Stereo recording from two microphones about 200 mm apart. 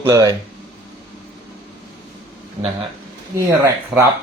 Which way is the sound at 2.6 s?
20° right (ahead or behind).